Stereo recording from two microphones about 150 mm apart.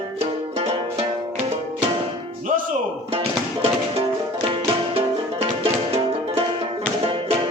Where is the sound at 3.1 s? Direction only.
40° right (ahead or behind).